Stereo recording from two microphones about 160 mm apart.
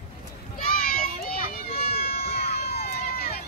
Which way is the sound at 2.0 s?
80° left.